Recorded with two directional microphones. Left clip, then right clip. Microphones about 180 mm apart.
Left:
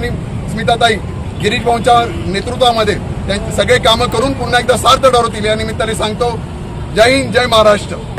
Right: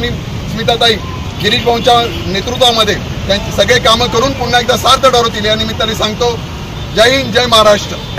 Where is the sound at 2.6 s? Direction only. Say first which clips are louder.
Right 2 dB; 20° left (ahead or behind).